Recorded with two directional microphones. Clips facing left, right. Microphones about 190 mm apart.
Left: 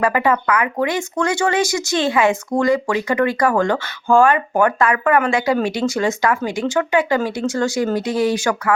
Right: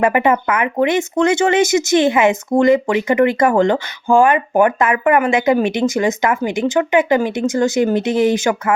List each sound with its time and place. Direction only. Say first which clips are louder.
0.0 s speech: right 3 dB; 20° right (ahead or behind)